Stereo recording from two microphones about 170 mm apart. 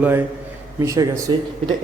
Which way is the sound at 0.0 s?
15° right (ahead or behind).